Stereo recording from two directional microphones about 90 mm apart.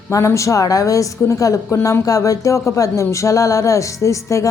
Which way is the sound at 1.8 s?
40° left (ahead or behind).